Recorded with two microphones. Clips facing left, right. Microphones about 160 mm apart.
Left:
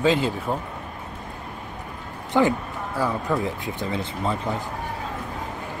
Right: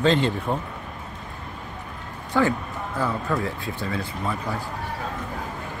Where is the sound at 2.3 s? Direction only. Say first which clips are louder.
Left 2 dB; 20° left (ahead or behind).